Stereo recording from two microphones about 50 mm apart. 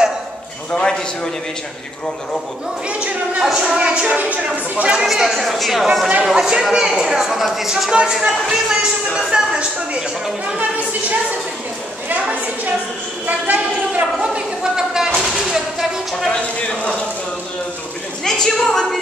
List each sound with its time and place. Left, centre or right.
0.7 s a woman's voice: centre
2.9 s speech: right
5.0 s speech: centre
7.9 s speech: centre
10.8 s a woman's voice: right
14.2 s a sound: centre
16.3 s speech: left
18.2 s a woman's voice: centre